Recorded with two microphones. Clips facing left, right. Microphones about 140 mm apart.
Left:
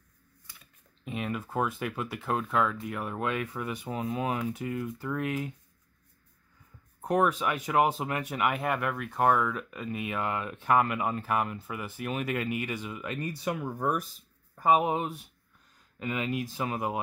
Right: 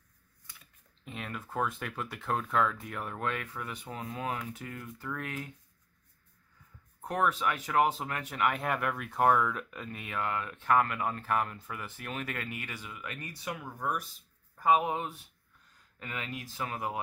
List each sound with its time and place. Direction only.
1.0 s speech: 10° left (ahead or behind)
7.0 s speech: 15° left (ahead or behind); by 14.0 s 45° left (ahead or behind)
14.6 s speech: 20° left (ahead or behind)